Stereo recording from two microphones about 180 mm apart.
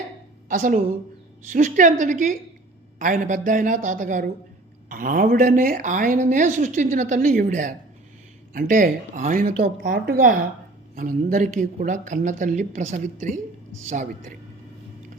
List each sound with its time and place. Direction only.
0.4 s a woman's voice: 50° right (ahead or behind)